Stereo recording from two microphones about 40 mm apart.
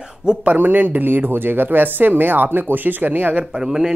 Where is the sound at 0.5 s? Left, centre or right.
Right.